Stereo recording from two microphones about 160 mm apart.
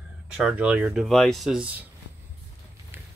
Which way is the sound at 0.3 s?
5° right (ahead or behind).